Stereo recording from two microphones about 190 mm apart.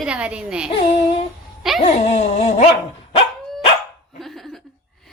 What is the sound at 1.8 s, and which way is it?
Dog, 35° left (ahead or behind).